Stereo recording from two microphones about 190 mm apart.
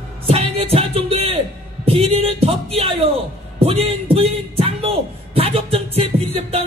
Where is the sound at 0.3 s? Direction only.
30° right (ahead or behind).